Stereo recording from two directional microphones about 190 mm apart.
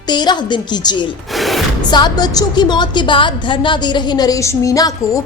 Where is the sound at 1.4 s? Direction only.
Centre (ahead or behind).